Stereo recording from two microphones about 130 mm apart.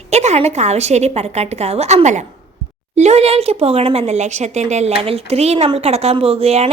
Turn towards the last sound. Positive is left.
turn(degrees=-50)  # may be behind; listen again after turning